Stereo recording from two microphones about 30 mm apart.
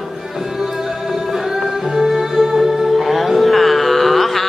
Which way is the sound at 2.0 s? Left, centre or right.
Centre.